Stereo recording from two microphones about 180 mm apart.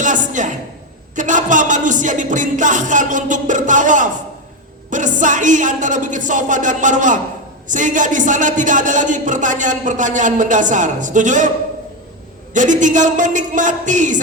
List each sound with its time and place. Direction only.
0.0 s a sound: 45° right (ahead or behind)
1.1 s speech: 45° right (ahead or behind)
12.5 s speech: 45° right (ahead or behind)